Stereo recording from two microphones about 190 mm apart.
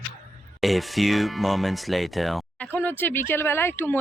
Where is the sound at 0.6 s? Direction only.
Centre (ahead or behind).